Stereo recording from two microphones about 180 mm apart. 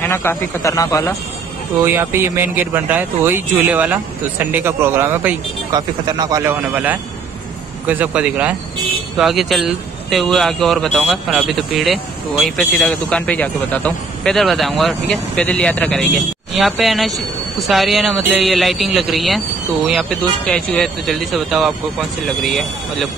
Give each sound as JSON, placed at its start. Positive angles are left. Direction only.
{"t": 0.1, "sound": "speech", "side_deg": 15}
{"t": 1.8, "sound": "speech", "side_deg": -15}
{"t": 5.7, "sound": "speech", "side_deg": -20}